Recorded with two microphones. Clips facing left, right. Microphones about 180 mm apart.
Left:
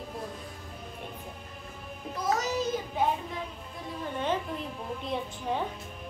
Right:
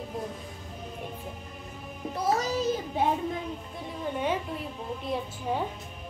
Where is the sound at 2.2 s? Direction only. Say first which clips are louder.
Right 2 dB; 30° right (ahead or behind).